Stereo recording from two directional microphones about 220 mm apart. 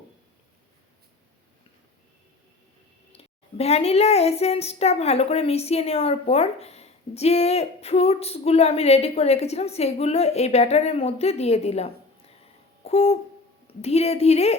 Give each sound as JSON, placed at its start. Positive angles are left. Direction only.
{"t": 3.1, "sound": "speech", "side_deg": 25}
{"t": 12.8, "sound": "a sound", "side_deg": 30}
{"t": 13.7, "sound": "speech", "side_deg": 30}